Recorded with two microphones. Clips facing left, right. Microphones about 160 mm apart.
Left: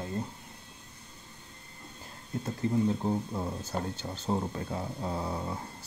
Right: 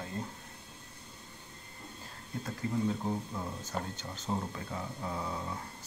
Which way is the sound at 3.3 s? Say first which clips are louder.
Left 4 dB; 30° left (ahead or behind).